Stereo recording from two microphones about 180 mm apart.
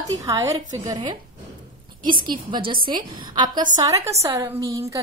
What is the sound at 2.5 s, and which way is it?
A woman's voice, 30° right (ahead or behind).